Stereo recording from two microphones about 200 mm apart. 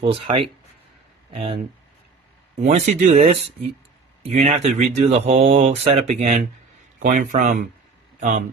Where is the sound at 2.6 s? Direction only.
35° right (ahead or behind).